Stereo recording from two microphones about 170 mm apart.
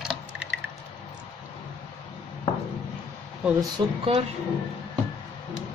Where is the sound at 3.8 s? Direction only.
25° right (ahead or behind).